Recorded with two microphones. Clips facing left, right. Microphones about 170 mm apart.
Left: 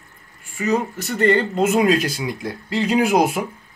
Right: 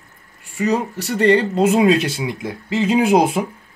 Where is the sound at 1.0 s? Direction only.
35° right (ahead or behind).